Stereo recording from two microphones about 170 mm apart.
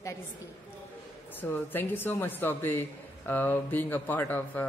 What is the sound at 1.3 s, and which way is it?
Speech, 10° left (ahead or behind).